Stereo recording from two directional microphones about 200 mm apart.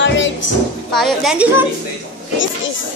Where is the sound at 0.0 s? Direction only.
65° left (ahead or behind).